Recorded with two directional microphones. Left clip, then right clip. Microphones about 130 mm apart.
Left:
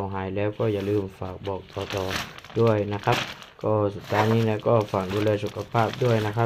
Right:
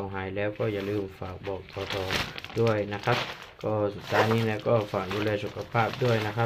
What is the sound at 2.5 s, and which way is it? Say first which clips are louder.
Speech: left 4 dB; 40° left (ahead or behind).